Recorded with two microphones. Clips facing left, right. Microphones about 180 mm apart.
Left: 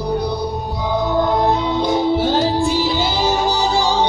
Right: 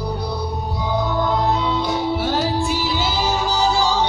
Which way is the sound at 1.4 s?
25° left (ahead or behind).